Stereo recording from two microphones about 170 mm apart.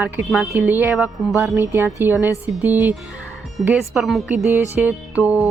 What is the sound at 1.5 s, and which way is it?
Speech, 15° right (ahead or behind).